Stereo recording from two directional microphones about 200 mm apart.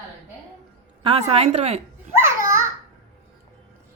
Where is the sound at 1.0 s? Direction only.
30° right (ahead or behind).